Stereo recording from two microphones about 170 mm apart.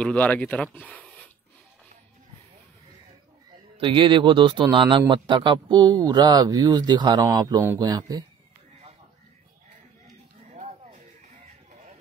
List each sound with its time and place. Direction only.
0.0 s speech: 10° left (ahead or behind)
3.7 s a man's voice: 30° right (ahead or behind)
10.5 s music: 40° right (ahead or behind)